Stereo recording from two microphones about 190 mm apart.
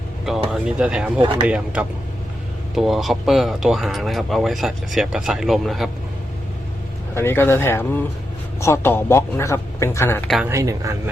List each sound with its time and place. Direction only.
0.5 s a man's voice: 5° right (ahead or behind)
7.1 s a man's voice: 10° left (ahead or behind)
10.2 s speech: centre (ahead or behind)
10.5 s a man's voice: 15° right (ahead or behind)